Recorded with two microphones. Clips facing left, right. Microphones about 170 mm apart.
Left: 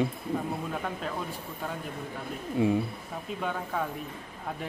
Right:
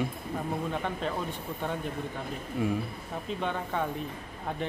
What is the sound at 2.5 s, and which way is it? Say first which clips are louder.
Speech: left 4 dB; 25° left (ahead or behind).